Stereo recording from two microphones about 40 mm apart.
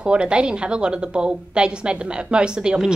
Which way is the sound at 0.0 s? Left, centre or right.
Right.